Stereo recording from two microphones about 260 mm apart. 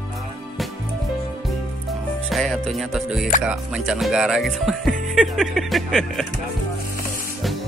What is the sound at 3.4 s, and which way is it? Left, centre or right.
Speech, centre.